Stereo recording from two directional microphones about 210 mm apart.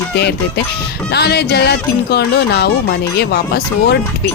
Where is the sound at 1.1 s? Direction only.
50° left (ahead or behind).